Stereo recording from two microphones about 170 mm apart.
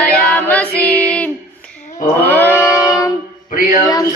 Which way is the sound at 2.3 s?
10° left (ahead or behind).